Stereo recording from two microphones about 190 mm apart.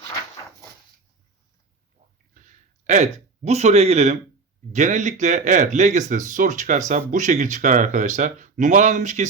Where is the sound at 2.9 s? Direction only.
35° right (ahead or behind).